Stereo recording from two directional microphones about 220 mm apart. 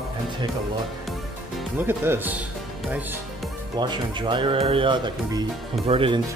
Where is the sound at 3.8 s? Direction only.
20° right (ahead or behind).